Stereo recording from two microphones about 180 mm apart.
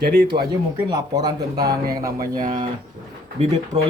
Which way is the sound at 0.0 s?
60° right (ahead or behind).